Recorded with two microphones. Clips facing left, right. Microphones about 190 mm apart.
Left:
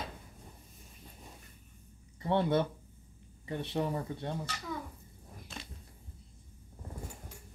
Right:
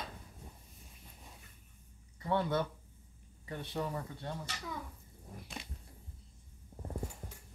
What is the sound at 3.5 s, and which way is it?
Speech, 25° left (ahead or behind).